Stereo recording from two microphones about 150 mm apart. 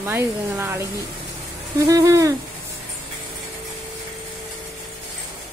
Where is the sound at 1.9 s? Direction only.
20° right (ahead or behind).